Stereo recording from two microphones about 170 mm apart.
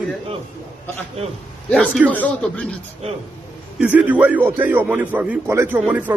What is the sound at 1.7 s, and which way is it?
Speech, 5° left (ahead or behind).